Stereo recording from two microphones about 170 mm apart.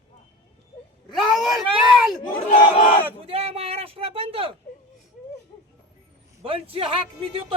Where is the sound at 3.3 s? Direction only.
35° right (ahead or behind).